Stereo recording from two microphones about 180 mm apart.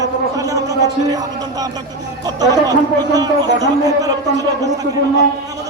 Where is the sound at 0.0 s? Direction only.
20° right (ahead or behind).